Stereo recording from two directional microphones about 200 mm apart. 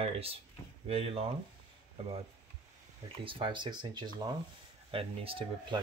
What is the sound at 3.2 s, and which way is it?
Speech, 25° right (ahead or behind).